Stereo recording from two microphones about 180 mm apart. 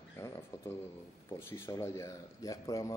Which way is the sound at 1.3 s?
15° left (ahead or behind).